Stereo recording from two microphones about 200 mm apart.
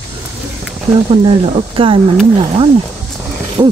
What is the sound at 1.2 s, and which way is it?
Speech, 25° right (ahead or behind).